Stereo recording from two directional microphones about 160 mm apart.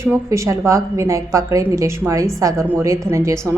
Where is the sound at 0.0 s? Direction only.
20° right (ahead or behind).